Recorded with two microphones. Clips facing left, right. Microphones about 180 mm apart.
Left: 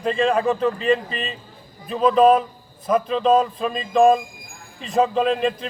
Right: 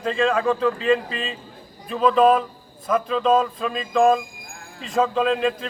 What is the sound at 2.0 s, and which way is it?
Speech, 35° left (ahead or behind).